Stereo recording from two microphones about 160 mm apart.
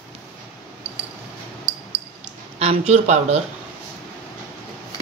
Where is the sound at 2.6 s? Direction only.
45° right (ahead or behind).